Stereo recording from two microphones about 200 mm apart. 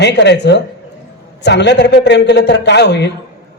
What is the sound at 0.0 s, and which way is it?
A man's voice, 60° left (ahead or behind).